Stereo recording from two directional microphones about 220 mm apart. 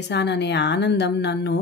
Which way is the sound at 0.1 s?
50° left (ahead or behind).